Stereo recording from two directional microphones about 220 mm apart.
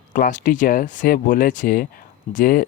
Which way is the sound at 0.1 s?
35° left (ahead or behind).